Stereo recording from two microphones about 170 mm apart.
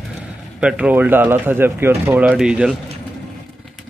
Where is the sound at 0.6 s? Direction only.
5° right (ahead or behind).